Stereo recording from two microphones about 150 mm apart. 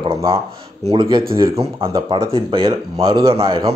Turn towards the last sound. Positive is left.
turn(degrees=-35)  # may be behind; listen again after turning